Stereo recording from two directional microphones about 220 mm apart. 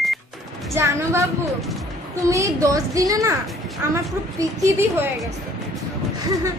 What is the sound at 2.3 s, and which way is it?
A woman's voice, 15° right (ahead or behind).